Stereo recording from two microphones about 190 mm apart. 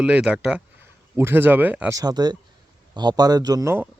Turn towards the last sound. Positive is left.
turn(degrees=-15)  # may be behind; listen again after turning